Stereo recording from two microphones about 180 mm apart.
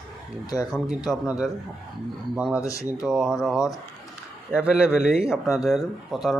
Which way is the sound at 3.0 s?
Centre (ahead or behind).